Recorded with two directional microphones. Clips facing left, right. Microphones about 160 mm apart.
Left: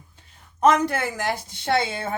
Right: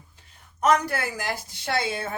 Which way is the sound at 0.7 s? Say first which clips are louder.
Left 3 dB; 25° left (ahead or behind).